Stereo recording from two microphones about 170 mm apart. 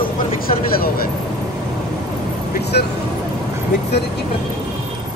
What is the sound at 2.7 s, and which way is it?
Speech, 70° left (ahead or behind).